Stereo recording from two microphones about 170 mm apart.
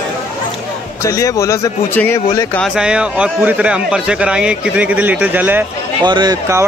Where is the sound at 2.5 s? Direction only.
Centre (ahead or behind).